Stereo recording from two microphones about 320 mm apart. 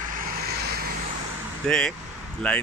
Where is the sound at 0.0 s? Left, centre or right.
Right.